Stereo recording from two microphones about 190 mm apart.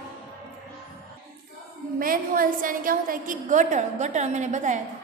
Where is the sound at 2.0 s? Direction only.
50° right (ahead or behind).